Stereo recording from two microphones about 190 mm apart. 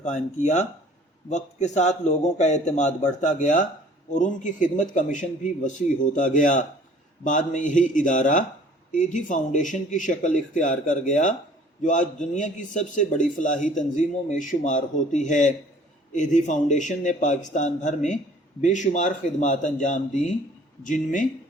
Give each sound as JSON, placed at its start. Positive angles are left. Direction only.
{"t": 0.0, "sound": "a man's voice", "side_deg": 40}